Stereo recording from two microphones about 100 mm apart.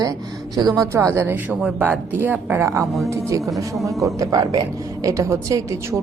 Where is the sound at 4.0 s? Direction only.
35° right (ahead or behind).